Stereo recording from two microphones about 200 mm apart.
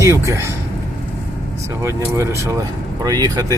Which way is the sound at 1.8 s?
15° right (ahead or behind).